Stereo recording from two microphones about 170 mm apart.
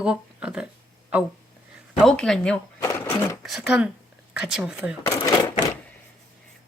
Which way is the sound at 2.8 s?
15° left (ahead or behind).